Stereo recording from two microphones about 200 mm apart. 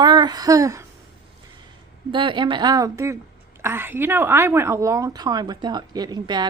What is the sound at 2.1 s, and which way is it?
A woman's voice, 25° right (ahead or behind).